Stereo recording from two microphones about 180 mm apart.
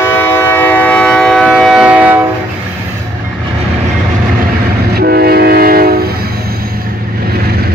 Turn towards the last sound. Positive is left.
turn(degrees=-55)  # may be behind; listen again after turning